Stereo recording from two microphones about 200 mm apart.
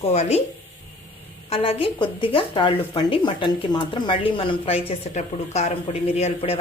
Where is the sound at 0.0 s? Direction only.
35° left (ahead or behind).